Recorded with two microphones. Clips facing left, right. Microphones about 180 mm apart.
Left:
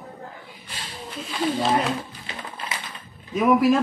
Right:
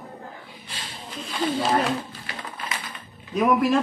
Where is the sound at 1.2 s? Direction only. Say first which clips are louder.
Left 1 dB; centre (ahead or behind).